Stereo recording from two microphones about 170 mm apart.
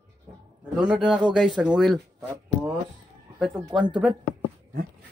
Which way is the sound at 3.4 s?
5° right (ahead or behind).